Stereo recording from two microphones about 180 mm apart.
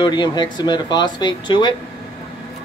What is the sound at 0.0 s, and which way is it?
Speech, 25° left (ahead or behind).